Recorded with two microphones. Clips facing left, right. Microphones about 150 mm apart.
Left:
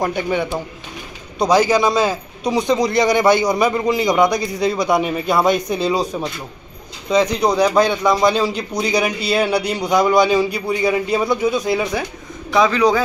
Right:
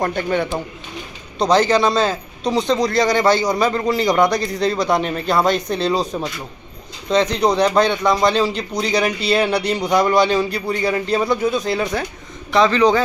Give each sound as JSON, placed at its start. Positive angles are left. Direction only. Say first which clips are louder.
{"t": 0.0, "sound": "a man's voice", "louder": "even", "side_deg": 10}